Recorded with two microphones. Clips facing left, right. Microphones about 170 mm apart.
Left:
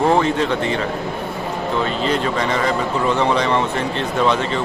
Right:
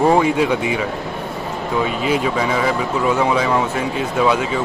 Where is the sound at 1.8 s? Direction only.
10° right (ahead or behind).